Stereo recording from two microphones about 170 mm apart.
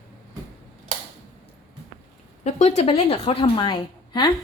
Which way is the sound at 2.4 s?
45° left (ahead or behind).